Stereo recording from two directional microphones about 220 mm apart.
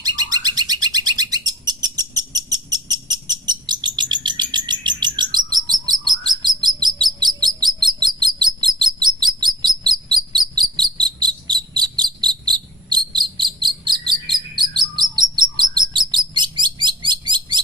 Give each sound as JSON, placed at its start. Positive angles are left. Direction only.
{"t": 0.0, "sound": "bird", "side_deg": -20}
{"t": 5.8, "sound": "chirp", "side_deg": -20}
{"t": 10.1, "sound": "bird", "side_deg": -20}